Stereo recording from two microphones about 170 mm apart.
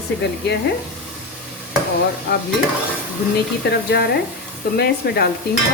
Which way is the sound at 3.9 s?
75° left (ahead or behind).